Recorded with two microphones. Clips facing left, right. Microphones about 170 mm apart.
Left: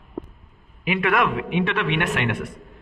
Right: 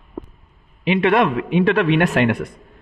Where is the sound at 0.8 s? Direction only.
30° right (ahead or behind).